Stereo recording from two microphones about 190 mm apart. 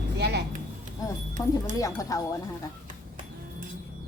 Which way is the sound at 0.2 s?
60° right (ahead or behind).